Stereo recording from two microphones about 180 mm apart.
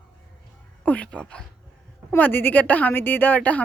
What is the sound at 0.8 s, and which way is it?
A woman's voice, 5° left (ahead or behind).